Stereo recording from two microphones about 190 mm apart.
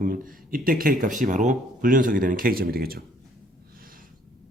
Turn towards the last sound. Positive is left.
turn(degrees=-50)  # may be behind; listen again after turning